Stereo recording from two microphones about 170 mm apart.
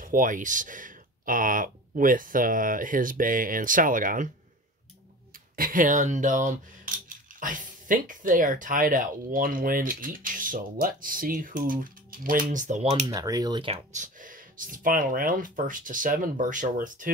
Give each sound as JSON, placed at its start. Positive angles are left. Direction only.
{"t": 0.0, "sound": "speech", "side_deg": -55}
{"t": 5.6, "sound": "speech", "side_deg": -50}
{"t": 13.0, "sound": "speech", "side_deg": -20}
{"t": 13.7, "sound": "speech", "side_deg": -45}